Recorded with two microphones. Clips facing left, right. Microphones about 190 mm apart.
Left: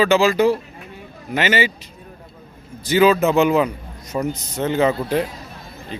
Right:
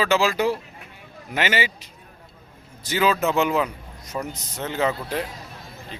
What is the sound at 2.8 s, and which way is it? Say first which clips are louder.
Speech: left 7 dB; 5° left (ahead or behind).